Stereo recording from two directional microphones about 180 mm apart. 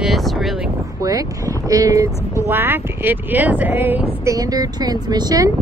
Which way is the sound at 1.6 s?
20° right (ahead or behind).